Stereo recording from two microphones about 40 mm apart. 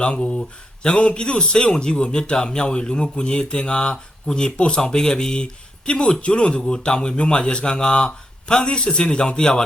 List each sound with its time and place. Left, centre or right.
0.0 s speech: left